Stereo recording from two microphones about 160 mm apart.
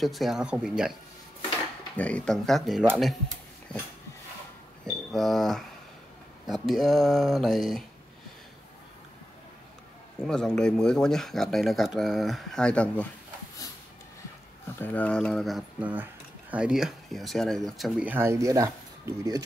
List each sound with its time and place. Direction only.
0.0 s speech: centre (ahead or behind)
2.0 s speech: 10° left (ahead or behind)
4.8 s speech: centre (ahead or behind)
10.1 s speech: 5° left (ahead or behind)
14.8 s speech: 10° left (ahead or behind); by 19.4 s 20° right (ahead or behind)